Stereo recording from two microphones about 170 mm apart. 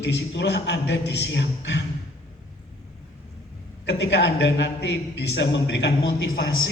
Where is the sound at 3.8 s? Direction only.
90° left.